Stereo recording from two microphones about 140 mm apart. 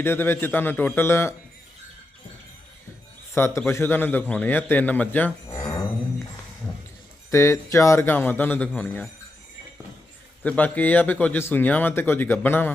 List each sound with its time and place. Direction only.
0.0 s a man's voice: 15° left (ahead or behind)
3.3 s a man's voice: 15° left (ahead or behind)
7.3 s a man's voice: 20° left (ahead or behind)
10.4 s a man's voice: 10° left (ahead or behind)